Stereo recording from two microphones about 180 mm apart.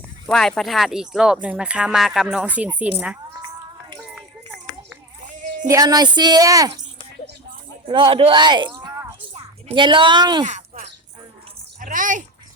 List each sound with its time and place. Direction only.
0.3 s speech: 5° left (ahead or behind)
4.1 s run: 5° right (ahead or behind)
5.6 s speech: 20° right (ahead or behind)
7.9 s speech: 25° right (ahead or behind)
10.4 s a sound: 40° right (ahead or behind)